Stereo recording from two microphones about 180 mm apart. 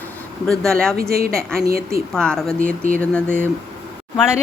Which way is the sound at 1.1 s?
55° right (ahead or behind).